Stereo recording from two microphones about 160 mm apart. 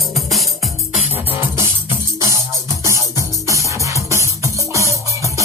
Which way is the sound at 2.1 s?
20° right (ahead or behind).